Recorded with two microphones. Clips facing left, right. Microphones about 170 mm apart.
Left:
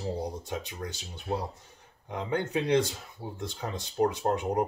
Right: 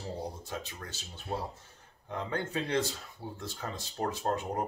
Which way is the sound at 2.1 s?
15° left (ahead or behind).